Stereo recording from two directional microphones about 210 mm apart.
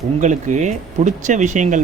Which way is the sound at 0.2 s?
35° right (ahead or behind).